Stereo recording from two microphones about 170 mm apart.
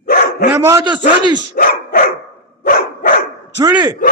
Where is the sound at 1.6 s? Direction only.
60° left (ahead or behind).